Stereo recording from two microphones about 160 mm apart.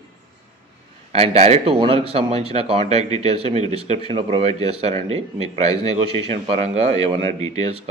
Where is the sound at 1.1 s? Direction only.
40° right (ahead or behind).